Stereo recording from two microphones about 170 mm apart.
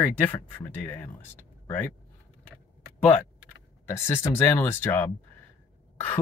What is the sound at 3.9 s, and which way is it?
Speech, 15° left (ahead or behind).